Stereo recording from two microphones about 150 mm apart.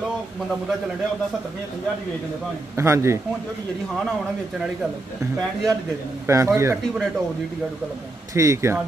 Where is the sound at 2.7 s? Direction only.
20° right (ahead or behind).